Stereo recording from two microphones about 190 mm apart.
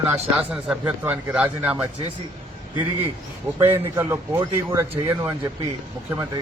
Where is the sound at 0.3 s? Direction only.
5° right (ahead or behind).